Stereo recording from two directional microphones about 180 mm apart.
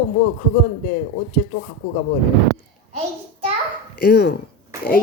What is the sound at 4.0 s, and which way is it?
Speech, 65° left (ahead or behind).